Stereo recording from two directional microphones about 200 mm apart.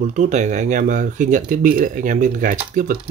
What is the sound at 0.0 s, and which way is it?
Speech, 35° right (ahead or behind).